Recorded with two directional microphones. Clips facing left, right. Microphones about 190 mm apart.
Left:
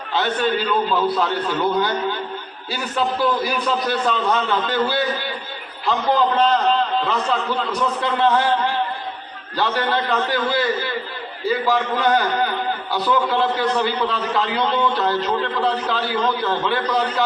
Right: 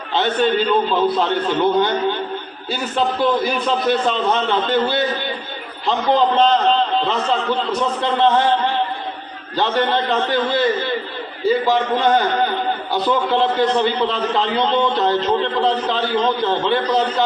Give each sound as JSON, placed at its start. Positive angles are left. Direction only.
{"t": 0.6, "sound": "a man's voice", "side_deg": -25}